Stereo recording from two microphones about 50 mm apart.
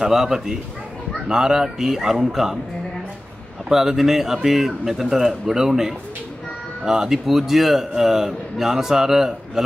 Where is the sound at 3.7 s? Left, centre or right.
Centre.